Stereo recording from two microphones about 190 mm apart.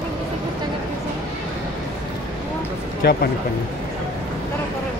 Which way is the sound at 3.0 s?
60° left (ahead or behind).